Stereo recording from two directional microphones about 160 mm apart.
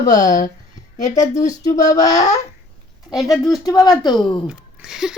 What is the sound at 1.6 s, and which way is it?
Speech, 45° left (ahead or behind).